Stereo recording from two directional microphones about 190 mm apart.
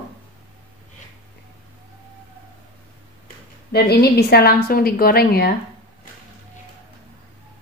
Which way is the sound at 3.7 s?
55° left (ahead or behind).